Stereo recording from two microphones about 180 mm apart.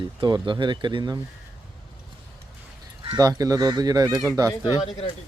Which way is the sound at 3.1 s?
20° right (ahead or behind).